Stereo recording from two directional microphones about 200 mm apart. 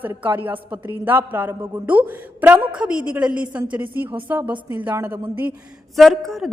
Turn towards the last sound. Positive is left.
turn(degrees=0)  # may be behind; listen again after turning